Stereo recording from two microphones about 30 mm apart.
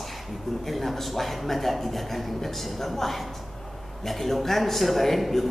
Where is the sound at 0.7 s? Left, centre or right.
Centre.